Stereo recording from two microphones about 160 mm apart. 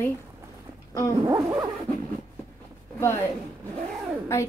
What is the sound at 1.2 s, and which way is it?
Zipper, 20° right (ahead or behind).